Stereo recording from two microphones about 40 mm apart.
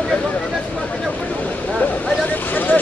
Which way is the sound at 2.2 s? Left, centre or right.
Left.